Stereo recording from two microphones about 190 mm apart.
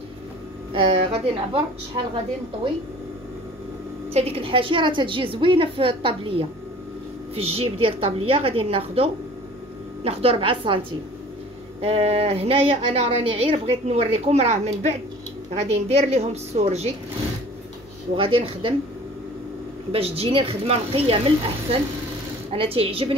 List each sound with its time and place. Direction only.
0.7 s a woman's voice: 30° right (ahead or behind)
4.1 s a woman's voice: 30° right (ahead or behind)
18.1 s a woman's voice: 30° right (ahead or behind)
19.9 s a woman's voice: 30° right (ahead or behind)
22.5 s a woman's voice: 30° right (ahead or behind)